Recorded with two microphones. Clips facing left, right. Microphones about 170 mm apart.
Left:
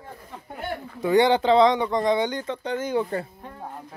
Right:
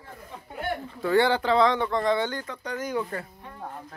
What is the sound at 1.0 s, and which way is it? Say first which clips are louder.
Speech: left 4 dB; 20° left (ahead or behind).